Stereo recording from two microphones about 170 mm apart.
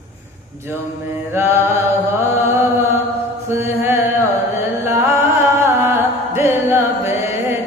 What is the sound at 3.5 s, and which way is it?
Mantra, 15° right (ahead or behind).